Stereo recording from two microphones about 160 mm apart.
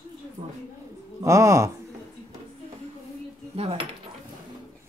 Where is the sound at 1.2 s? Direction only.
20° right (ahead or behind).